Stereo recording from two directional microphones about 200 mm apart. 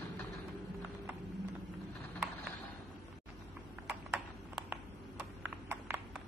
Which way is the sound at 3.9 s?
5° right (ahead or behind).